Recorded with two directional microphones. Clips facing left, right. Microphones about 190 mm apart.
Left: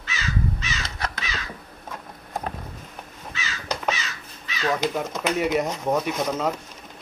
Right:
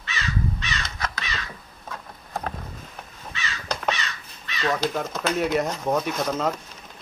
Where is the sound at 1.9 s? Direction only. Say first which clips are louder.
Even; 10° left (ahead or behind).